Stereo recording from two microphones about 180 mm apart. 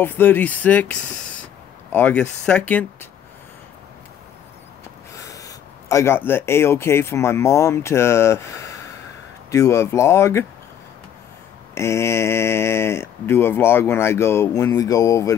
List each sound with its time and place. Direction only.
0.0 s speech: 10° left (ahead or behind)
5.1 s speech: 15° left (ahead or behind)
11.7 s speech: 15° left (ahead or behind)